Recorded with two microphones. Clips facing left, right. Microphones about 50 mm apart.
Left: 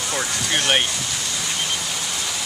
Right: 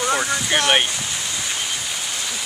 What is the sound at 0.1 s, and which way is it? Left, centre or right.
Speech, centre.